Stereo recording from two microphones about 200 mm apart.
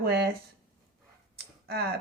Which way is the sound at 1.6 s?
50° right (ahead or behind).